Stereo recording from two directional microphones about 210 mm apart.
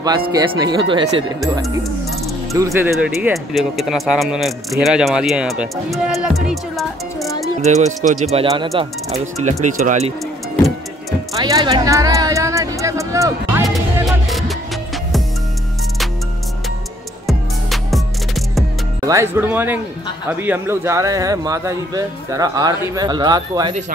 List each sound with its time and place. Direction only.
0.3 s speech: 20° right (ahead or behind); by 7.2 s centre (ahead or behind)
7.6 s speech: 30° right (ahead or behind)
8.5 s speech: 20° right (ahead or behind)
11.3 s a sound: 20° right (ahead or behind)
14.0 s music: centre (ahead or behind)
17.3 s music: centre (ahead or behind)
19.0 s speech: 15° right (ahead or behind)